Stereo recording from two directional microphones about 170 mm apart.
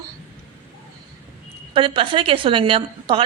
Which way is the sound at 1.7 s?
30° right (ahead or behind).